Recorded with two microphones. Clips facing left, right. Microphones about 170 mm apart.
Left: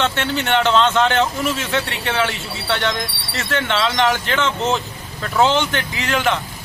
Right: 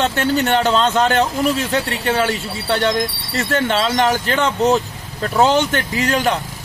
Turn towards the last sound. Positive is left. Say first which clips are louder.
# right 2 dB
turn(degrees=-40)  # may be behind; listen again after turning